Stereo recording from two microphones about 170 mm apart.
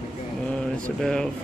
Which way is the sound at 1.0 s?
5° left (ahead or behind).